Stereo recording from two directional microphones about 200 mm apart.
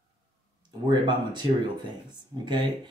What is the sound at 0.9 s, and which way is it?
Speech, 20° right (ahead or behind).